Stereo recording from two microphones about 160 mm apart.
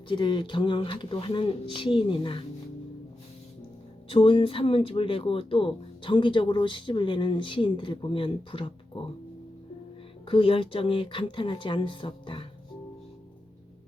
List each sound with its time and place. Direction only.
0.1 s speech: 30° left (ahead or behind)
4.1 s speech: 35° left (ahead or behind)
10.2 s speech: 35° left (ahead or behind)